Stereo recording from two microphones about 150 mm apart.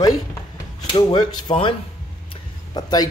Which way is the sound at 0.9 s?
35° left (ahead or behind).